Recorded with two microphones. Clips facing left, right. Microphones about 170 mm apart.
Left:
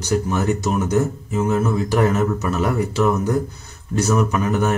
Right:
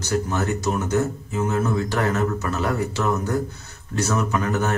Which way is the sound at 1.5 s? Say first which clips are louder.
Left 4 dB; 15° left (ahead or behind).